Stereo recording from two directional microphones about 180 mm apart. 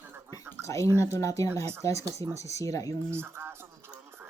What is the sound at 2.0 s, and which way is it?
Speech, 20° right (ahead or behind).